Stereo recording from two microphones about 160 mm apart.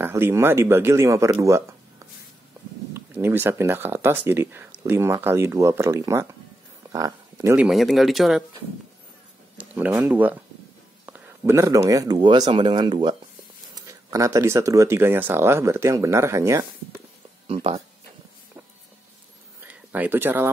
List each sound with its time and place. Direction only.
0.0 s speech: 15° right (ahead or behind)
2.9 s speech: 15° right (ahead or behind)
6.9 s a sound: 20° right (ahead or behind)
7.5 s speech: 5° right (ahead or behind)
9.6 s a sound: 10° right (ahead or behind)
9.9 s speech: 10° right (ahead or behind)
17.5 s speech: 40° right (ahead or behind)
19.6 s speech: 10° right (ahead or behind)